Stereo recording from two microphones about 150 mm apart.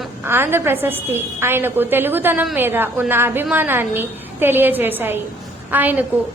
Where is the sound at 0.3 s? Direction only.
15° right (ahead or behind).